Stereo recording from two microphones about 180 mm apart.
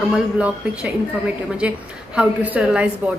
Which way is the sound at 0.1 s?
5° right (ahead or behind).